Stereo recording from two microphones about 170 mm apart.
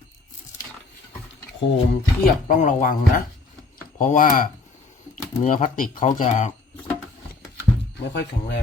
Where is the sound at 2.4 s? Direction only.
45° left (ahead or behind).